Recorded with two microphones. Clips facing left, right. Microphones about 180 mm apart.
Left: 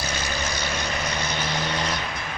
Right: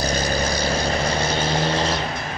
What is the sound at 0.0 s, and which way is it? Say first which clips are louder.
Vehicle: right 7 dB; 35° right (ahead or behind).